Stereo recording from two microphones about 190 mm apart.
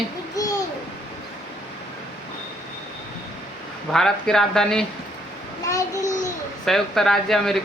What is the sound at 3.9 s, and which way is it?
Speech, centre (ahead or behind).